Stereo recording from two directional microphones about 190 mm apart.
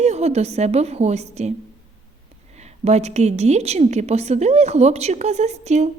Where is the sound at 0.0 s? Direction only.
35° right (ahead or behind).